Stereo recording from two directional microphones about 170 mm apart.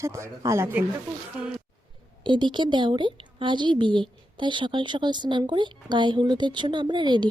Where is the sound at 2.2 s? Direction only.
30° right (ahead or behind).